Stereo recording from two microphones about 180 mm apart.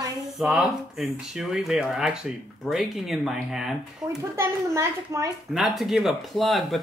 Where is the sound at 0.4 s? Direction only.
5° right (ahead or behind).